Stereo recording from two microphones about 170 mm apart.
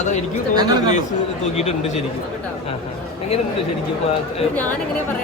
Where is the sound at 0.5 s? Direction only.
25° right (ahead or behind).